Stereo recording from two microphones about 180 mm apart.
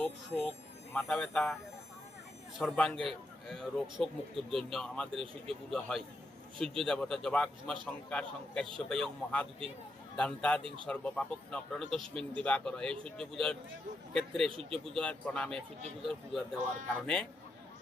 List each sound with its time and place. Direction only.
0.0 s speech: centre (ahead or behind)
2.6 s a man's voice: 5° left (ahead or behind)
10.6 s a man's voice: 30° right (ahead or behind)
10.8 s speech: 5° left (ahead or behind)
14.5 s speech: 30° right (ahead or behind)
14.8 s speech: 5° left (ahead or behind)